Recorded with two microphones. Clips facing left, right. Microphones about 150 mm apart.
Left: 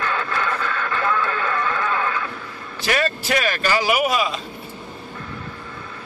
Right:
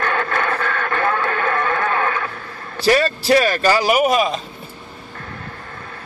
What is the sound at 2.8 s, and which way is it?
Speech, 35° right (ahead or behind).